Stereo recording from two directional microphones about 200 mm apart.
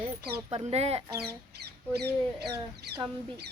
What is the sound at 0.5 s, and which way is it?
Speech, 30° right (ahead or behind).